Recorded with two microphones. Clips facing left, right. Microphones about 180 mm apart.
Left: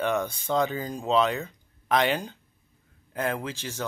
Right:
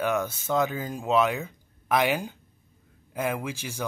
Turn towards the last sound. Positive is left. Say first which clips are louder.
# even
turn(degrees=-10)  # may be behind; listen again after turning